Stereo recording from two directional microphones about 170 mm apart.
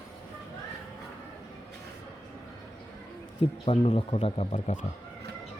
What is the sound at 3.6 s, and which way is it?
Speech, 35° left (ahead or behind).